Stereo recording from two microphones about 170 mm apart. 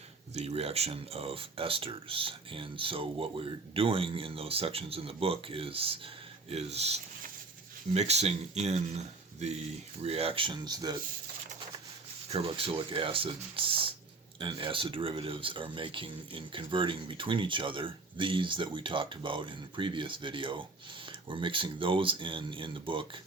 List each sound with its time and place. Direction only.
0.3 s speech: 35° right (ahead or behind)
12.5 s speech: 30° right (ahead or behind)